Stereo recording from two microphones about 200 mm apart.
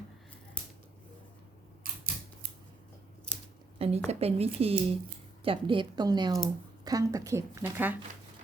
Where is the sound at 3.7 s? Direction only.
30° right (ahead or behind).